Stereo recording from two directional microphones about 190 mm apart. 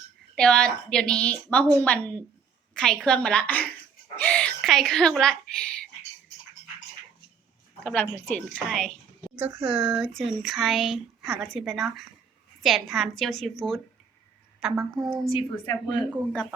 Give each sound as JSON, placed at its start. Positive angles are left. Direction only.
{"t": 0.3, "sound": "speech", "side_deg": 5}
{"t": 7.9, "sound": "a woman's voice", "side_deg": 5}
{"t": 9.4, "sound": "speech", "side_deg": -5}
{"t": 15.3, "sound": "a woman's voice", "side_deg": 25}
{"t": 15.9, "sound": "speech", "side_deg": 5}